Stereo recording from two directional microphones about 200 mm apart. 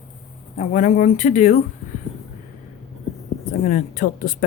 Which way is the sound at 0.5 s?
35° left (ahead or behind).